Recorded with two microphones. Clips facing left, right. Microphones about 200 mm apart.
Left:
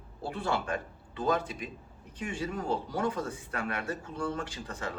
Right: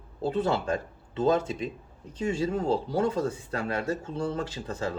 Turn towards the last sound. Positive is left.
turn(degrees=-25)  # may be behind; listen again after turning